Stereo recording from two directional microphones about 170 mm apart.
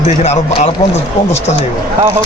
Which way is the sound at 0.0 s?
40° left (ahead or behind).